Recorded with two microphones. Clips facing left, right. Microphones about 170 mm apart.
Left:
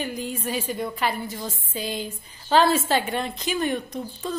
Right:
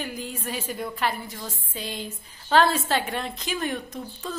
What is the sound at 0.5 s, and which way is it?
A woman's voice, centre (ahead or behind).